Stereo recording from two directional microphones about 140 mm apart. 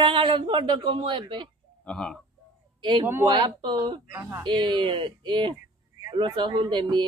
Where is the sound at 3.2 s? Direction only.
30° right (ahead or behind).